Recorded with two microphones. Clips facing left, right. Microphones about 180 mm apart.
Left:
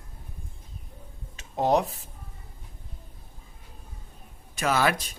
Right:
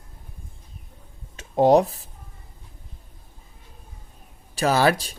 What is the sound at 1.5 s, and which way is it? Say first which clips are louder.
Speech: right 7 dB; 35° right (ahead or behind).